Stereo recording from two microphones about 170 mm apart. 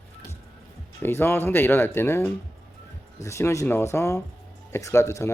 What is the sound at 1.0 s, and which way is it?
Speech, 15° left (ahead or behind).